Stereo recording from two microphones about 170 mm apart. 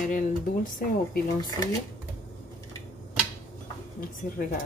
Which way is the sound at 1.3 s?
25° left (ahead or behind).